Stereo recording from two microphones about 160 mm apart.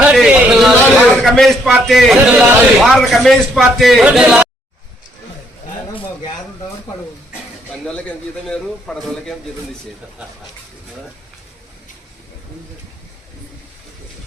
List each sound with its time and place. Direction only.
0.0 s a sound: 5° right (ahead or behind)
1.1 s a man's voice: 5° left (ahead or behind)
7.7 s a man's voice: 5° left (ahead or behind)